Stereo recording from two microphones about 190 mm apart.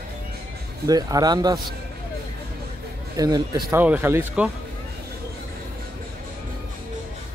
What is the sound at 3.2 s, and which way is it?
Speech, 20° right (ahead or behind).